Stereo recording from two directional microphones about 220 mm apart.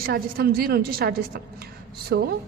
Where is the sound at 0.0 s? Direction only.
45° right (ahead or behind).